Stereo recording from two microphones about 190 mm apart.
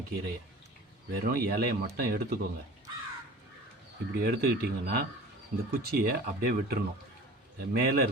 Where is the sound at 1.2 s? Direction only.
50° right (ahead or behind).